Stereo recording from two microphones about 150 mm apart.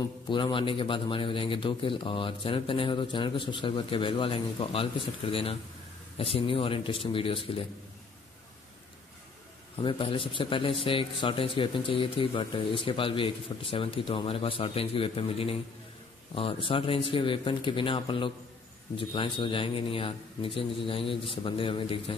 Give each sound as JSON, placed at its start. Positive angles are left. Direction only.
{"t": 0.3, "sound": "a man's voice", "side_deg": 35}
{"t": 9.8, "sound": "a man's voice", "side_deg": 35}